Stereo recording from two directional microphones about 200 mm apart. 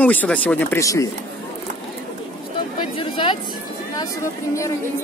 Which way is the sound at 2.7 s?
25° left (ahead or behind).